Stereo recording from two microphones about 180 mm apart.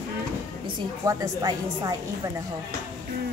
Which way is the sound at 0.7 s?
20° right (ahead or behind).